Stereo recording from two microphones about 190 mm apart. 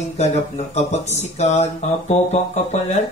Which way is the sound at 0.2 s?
35° left (ahead or behind).